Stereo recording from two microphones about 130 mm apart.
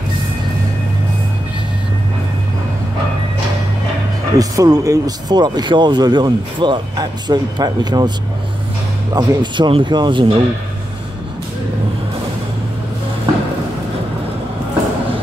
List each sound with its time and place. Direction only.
4.4 s speech: 25° right (ahead or behind)
9.1 s speech: 35° right (ahead or behind)